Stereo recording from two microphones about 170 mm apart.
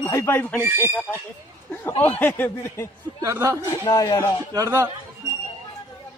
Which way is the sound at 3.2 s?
20° right (ahead or behind).